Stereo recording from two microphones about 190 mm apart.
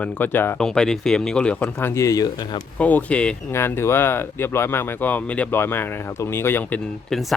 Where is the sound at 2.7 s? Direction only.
5° left (ahead or behind).